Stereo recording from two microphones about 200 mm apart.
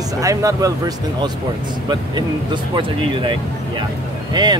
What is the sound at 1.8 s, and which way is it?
Speech, 20° right (ahead or behind).